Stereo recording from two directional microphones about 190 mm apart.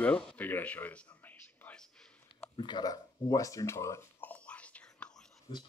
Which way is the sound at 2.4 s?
25° left (ahead or behind).